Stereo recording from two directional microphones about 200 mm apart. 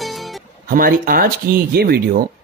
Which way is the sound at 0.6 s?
45° right (ahead or behind).